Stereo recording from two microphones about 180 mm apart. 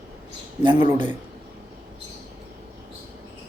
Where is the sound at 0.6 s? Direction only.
25° right (ahead or behind).